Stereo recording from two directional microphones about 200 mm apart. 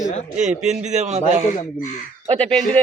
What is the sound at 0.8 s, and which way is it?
Speech, 35° right (ahead or behind).